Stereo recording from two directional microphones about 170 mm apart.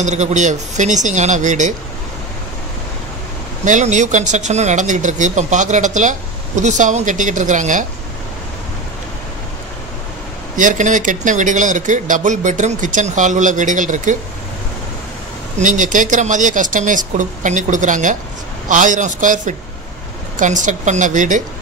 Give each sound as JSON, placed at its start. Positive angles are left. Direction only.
{"t": 0.0, "sound": "speech", "side_deg": -40}
{"t": 3.6, "sound": "speech", "side_deg": -45}
{"t": 10.5, "sound": "speech", "side_deg": -50}
{"t": 15.5, "sound": "speech", "side_deg": -50}